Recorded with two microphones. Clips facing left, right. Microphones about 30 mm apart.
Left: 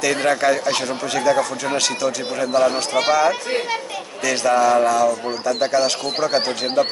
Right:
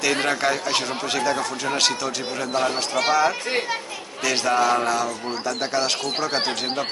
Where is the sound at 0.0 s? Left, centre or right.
Centre.